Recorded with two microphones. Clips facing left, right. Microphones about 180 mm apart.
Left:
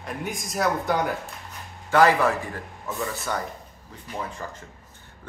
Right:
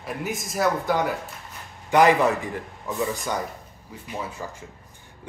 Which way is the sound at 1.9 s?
20° right (ahead or behind).